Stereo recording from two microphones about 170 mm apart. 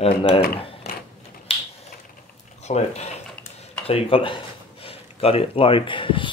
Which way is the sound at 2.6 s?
40° left (ahead or behind).